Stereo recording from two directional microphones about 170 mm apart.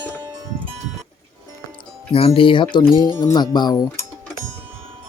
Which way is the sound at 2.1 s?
35° left (ahead or behind).